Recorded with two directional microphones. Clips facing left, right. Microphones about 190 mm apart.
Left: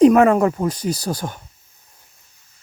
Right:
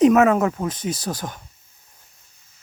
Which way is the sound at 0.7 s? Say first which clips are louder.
Left 3 dB; 35° left (ahead or behind).